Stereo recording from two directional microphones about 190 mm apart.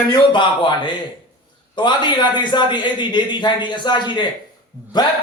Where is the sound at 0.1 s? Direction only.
25° left (ahead or behind).